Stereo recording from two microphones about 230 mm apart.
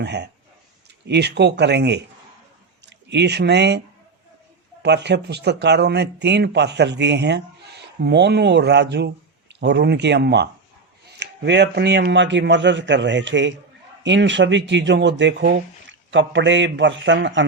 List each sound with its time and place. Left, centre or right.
0.0 s speech: right
4.8 s speech: right